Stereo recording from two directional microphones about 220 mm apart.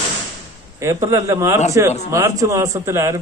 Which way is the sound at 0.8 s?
10° right (ahead or behind).